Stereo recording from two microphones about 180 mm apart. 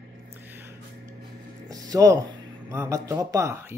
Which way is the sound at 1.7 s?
20° right (ahead or behind).